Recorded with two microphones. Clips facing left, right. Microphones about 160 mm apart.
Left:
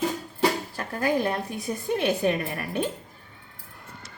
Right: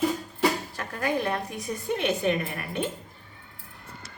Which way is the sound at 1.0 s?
30° left (ahead or behind).